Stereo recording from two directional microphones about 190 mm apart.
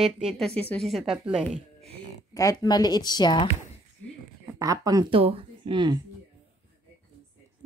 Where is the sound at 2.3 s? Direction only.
20° left (ahead or behind).